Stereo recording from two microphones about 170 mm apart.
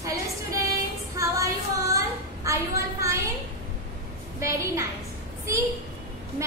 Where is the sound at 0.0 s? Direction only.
20° right (ahead or behind).